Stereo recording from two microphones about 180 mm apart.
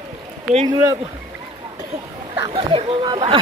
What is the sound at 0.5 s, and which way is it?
Speech, 35° right (ahead or behind).